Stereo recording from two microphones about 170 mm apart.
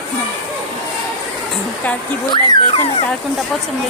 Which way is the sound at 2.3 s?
30° left (ahead or behind).